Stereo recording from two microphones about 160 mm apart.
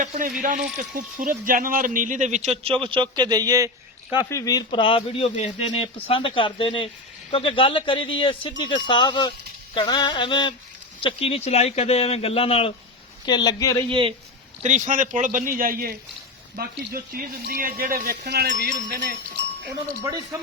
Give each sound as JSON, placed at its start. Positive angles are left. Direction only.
{"t": 0.0, "sound": "speech", "side_deg": -55}
{"t": 2.8, "sound": "a man's voice", "side_deg": -30}
{"t": 4.2, "sound": "speech", "side_deg": 20}
{"t": 9.7, "sound": "a sound", "side_deg": 30}
{"t": 11.0, "sound": "speech", "side_deg": 40}
{"t": 13.2, "sound": "a sound", "side_deg": 25}
{"t": 14.6, "sound": "speech", "side_deg": -50}